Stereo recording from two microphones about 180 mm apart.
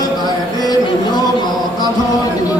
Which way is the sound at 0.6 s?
20° left (ahead or behind).